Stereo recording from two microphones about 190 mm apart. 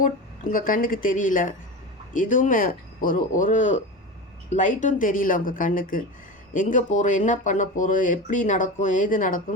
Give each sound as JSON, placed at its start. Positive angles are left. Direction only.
{"t": 0.5, "sound": "speech", "side_deg": 45}